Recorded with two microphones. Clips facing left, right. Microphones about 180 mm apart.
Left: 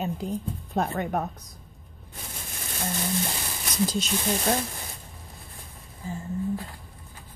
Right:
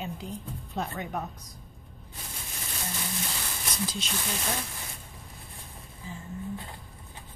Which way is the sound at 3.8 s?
40° left (ahead or behind).